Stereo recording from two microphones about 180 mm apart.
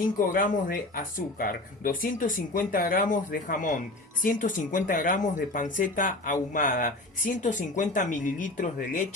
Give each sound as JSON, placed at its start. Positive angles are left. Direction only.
{"t": 0.3, "sound": "speech", "side_deg": 50}